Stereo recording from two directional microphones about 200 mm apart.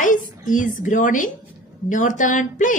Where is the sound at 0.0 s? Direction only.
40° left (ahead or behind).